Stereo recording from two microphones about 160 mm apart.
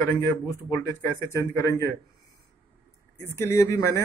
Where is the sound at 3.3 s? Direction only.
15° left (ahead or behind).